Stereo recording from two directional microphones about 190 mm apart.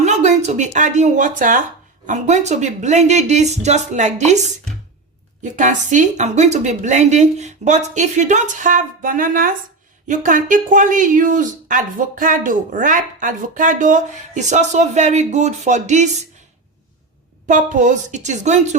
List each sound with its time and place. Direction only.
0.0 s a woman's voice: 35° right (ahead or behind)
5.4 s a woman's voice: 40° right (ahead or behind)
17.4 s a woman's voice: 40° right (ahead or behind)